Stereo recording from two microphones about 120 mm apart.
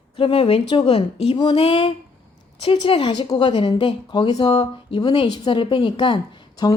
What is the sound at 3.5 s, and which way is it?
A woman's voice, 50° left (ahead or behind).